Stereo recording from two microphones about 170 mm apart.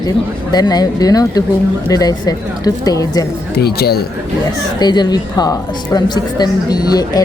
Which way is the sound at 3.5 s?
70° left (ahead or behind).